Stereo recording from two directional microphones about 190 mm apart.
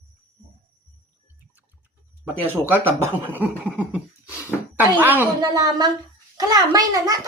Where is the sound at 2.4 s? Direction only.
10° right (ahead or behind).